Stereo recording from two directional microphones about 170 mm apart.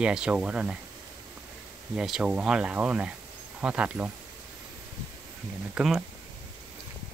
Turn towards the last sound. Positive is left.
turn(degrees=0)  # may be behind; listen again after turning